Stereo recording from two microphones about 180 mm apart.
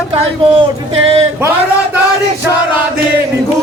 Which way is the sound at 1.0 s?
35° right (ahead or behind).